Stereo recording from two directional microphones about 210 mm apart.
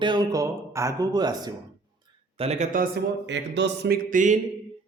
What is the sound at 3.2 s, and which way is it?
Speech, 60° right (ahead or behind).